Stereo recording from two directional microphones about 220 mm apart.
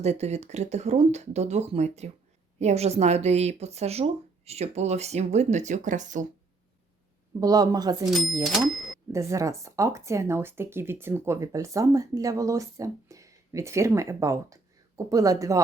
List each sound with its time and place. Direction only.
0.0 s speech: 30° right (ahead or behind)
7.3 s speech: 15° right (ahead or behind)
8.4 s speech: centre (ahead or behind)
9.1 s speech: 15° right (ahead or behind)